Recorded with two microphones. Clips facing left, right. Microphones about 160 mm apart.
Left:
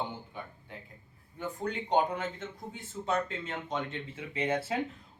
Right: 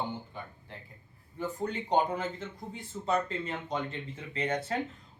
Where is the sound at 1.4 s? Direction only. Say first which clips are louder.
Right 1 dB; centre (ahead or behind).